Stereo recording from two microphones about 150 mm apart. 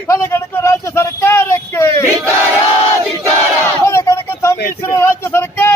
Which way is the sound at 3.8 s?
20° left (ahead or behind).